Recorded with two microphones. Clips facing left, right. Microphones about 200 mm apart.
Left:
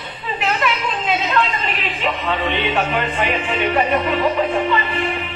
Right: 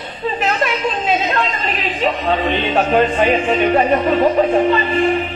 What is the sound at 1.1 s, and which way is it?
Music, 45° right (ahead or behind).